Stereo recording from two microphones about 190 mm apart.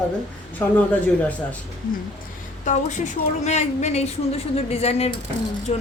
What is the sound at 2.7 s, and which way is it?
Speech, 40° left (ahead or behind).